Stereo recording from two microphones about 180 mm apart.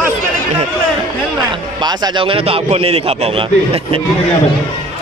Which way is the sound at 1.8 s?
25° right (ahead or behind).